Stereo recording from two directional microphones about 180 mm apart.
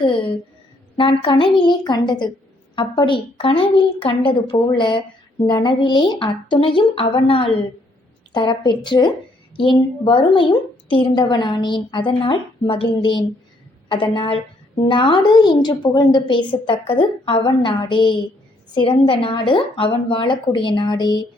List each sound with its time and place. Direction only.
0.0 s a woman's voice: 25° left (ahead or behind)